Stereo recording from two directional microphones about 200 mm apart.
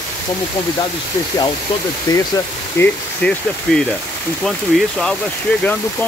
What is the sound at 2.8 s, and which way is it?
Speech, 5° left (ahead or behind).